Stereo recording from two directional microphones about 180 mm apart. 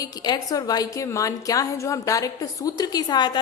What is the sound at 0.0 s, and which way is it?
A woman's voice, 20° left (ahead or behind).